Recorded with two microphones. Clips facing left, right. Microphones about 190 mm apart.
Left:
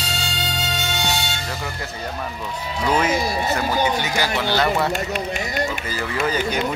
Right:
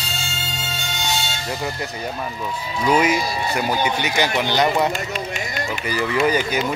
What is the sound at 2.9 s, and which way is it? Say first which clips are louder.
A man's voice: right 2 dB; 10° right (ahead or behind).